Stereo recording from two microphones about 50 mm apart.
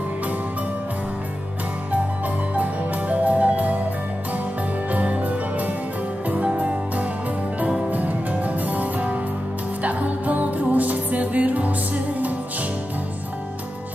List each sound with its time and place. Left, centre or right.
2.5 s music: right
4.9 s music: right